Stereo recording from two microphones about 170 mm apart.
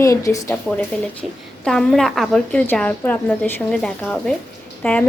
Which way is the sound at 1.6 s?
5° left (ahead or behind).